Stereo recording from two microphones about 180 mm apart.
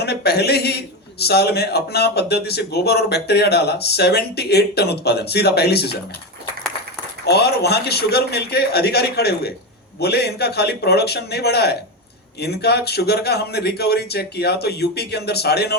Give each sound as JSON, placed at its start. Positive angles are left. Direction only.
{"t": 0.0, "sound": "a man's voice", "side_deg": 65}
{"t": 7.3, "sound": "a man's voice", "side_deg": 65}